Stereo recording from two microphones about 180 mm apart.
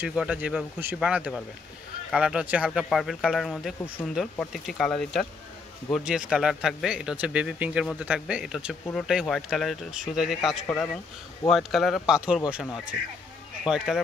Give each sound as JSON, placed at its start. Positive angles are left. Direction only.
{"t": 0.0, "sound": "speech", "side_deg": -5}